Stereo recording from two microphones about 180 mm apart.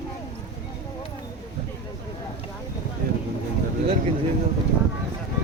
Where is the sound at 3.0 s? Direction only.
55° right (ahead or behind).